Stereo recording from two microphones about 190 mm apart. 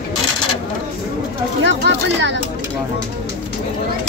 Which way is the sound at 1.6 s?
65° right (ahead or behind).